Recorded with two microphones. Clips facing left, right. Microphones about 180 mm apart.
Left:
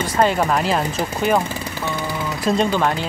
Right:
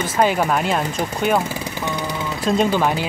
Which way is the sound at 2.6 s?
5° right (ahead or behind).